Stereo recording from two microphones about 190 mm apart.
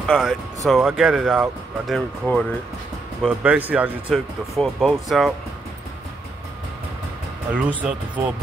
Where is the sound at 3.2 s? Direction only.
5° right (ahead or behind).